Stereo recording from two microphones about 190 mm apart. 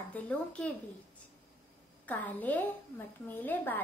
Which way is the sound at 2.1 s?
10° left (ahead or behind).